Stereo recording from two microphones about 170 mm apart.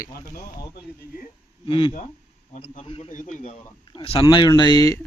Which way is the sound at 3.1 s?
50° left (ahead or behind).